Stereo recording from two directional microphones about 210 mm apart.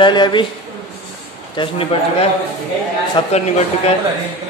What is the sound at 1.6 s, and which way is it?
A man's voice, 25° left (ahead or behind).